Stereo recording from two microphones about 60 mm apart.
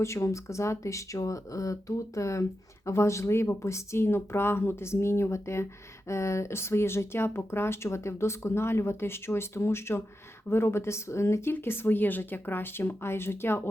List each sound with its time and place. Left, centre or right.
0.0 s speech: left
11.5 s speech: left